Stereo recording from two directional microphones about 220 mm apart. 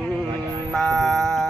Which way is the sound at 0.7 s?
Centre (ahead or behind).